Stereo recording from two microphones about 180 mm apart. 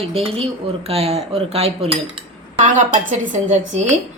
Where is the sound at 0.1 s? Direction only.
30° right (ahead or behind).